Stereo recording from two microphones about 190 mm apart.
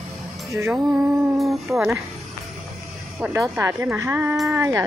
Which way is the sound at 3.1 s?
10° right (ahead or behind).